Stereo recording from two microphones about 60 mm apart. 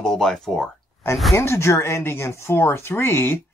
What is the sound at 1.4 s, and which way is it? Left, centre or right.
Speech, left.